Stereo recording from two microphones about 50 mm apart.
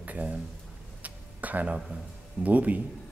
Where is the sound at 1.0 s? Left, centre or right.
Right.